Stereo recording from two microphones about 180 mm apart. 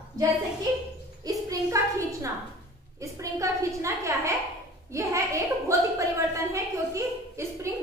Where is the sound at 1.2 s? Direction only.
15° right (ahead or behind).